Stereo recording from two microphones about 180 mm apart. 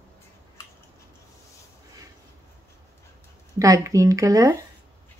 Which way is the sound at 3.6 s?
20° right (ahead or behind).